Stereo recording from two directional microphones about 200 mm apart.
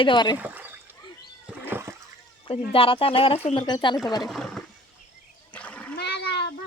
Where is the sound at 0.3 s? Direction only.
10° right (ahead or behind).